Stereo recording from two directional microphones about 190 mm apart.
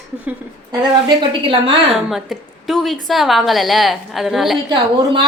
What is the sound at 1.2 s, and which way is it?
Speech, 30° right (ahead or behind).